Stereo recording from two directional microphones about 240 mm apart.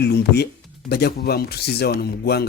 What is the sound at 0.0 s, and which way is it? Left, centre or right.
A man's voice, left.